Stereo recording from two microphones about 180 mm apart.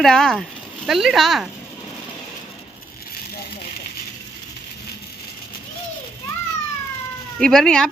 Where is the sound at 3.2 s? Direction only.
60° left (ahead or behind).